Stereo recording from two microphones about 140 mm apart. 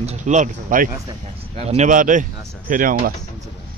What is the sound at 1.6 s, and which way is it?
Speech, 55° right (ahead or behind).